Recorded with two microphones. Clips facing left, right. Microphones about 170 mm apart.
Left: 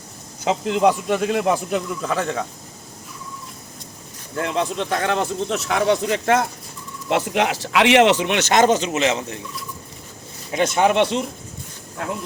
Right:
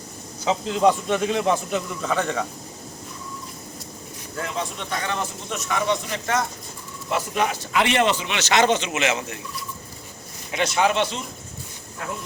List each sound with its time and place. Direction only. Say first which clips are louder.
0.8 s a man's voice: left 1 dB; 10° left (ahead or behind)
4.4 s speech: left 7 dB; 75° left (ahead or behind); by 9.4 s 30° left (ahead or behind)
10.5 s speech: left 4 dB; 50° left (ahead or behind); by 11.3 s 65° left (ahead or behind)